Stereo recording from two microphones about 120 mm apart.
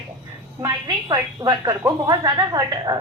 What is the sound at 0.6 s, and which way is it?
A woman's voice, 30° right (ahead or behind).